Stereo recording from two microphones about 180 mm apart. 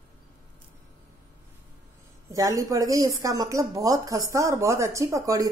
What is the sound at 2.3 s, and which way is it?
Speech, 20° right (ahead or behind).